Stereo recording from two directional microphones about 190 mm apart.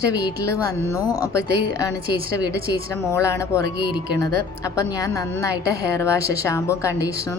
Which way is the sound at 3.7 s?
5° right (ahead or behind).